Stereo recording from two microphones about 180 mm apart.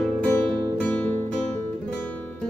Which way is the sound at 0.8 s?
10° left (ahead or behind).